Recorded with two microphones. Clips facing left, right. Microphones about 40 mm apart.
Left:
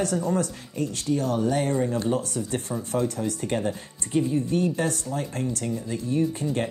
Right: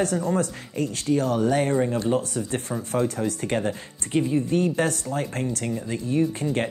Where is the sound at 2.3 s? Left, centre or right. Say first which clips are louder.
Right 1 dB; right.